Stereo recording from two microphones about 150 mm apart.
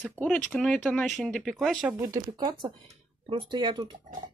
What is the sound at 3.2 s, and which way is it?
Speech, 35° right (ahead or behind).